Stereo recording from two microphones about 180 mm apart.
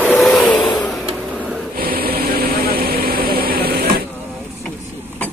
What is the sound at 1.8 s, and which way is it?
Vehicle, 55° right (ahead or behind).